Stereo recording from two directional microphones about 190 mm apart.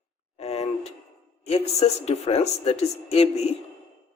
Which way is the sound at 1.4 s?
35° left (ahead or behind).